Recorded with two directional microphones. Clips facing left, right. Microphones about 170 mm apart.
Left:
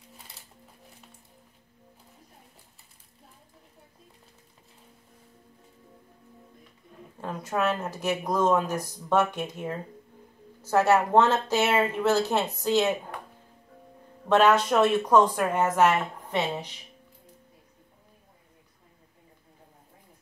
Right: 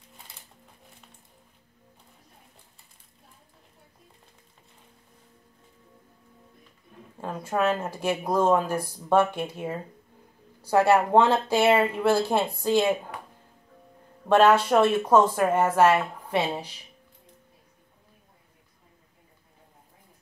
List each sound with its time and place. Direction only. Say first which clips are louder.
7.2 s speech: right 2 dB; 10° right (ahead or behind)
14.3 s speech: right 2 dB; 10° right (ahead or behind)